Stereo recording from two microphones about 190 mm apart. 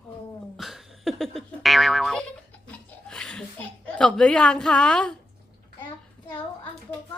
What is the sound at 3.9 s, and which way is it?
Speech, 5° left (ahead or behind).